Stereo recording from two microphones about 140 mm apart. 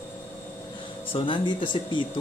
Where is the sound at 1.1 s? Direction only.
35° left (ahead or behind).